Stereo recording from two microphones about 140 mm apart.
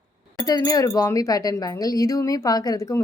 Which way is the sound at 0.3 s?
25° left (ahead or behind).